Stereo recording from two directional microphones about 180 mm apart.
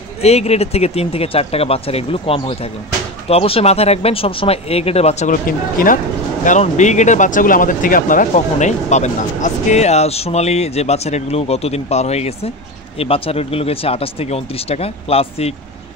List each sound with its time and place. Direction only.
0.2 s speech: 35° left (ahead or behind)
5.3 s speech: 50° left (ahead or behind); by 15.5 s 35° left (ahead or behind)